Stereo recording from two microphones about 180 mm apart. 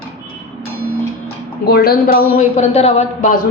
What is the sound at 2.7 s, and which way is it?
Speech, 35° left (ahead or behind).